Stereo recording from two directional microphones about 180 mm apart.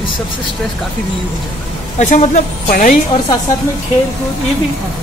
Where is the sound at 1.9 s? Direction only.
40° left (ahead or behind).